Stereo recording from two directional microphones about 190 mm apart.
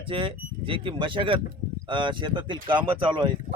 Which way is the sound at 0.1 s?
25° right (ahead or behind).